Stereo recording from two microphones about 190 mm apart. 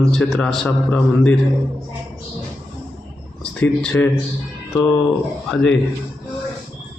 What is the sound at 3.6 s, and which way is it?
Speech, 10° left (ahead or behind).